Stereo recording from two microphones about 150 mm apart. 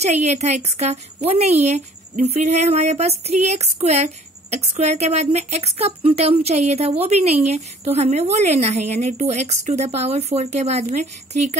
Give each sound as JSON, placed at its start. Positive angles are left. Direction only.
{"t": 0.0, "sound": "a woman's voice", "side_deg": -50}